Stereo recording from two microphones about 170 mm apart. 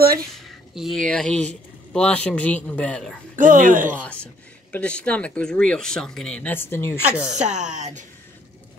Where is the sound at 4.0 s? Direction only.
5° left (ahead or behind).